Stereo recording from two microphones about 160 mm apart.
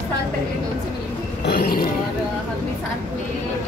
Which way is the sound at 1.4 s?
75° left (ahead or behind).